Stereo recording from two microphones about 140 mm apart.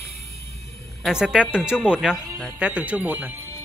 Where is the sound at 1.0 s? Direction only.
5° right (ahead or behind).